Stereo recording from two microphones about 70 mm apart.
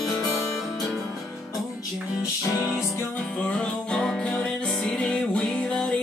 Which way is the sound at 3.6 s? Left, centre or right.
Centre.